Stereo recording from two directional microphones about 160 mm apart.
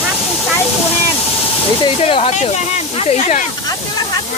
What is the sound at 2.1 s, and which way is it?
Speech, 40° left (ahead or behind).